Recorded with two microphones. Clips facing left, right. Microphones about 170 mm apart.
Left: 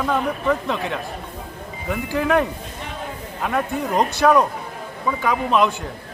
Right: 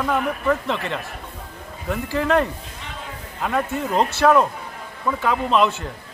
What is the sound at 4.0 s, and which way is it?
Speech, 15° left (ahead or behind).